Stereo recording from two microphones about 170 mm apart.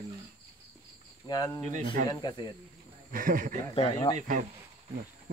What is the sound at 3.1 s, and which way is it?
Speech, 55° right (ahead or behind).